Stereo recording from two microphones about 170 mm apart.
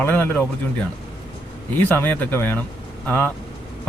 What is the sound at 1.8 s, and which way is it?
A man's voice, 10° left (ahead or behind).